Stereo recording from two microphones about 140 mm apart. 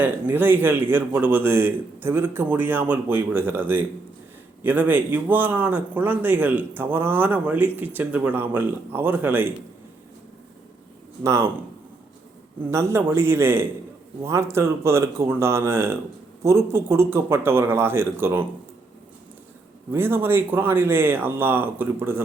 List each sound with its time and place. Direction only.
0.0 s speech: 15° right (ahead or behind)
11.2 s speech: 20° right (ahead or behind)
12.7 s speech: 20° right (ahead or behind)
19.9 s speech: 15° right (ahead or behind)